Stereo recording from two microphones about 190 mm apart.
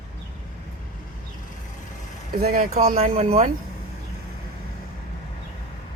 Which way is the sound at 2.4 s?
50° right (ahead or behind).